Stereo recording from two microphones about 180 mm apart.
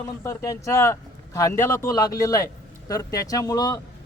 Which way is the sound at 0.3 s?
15° left (ahead or behind).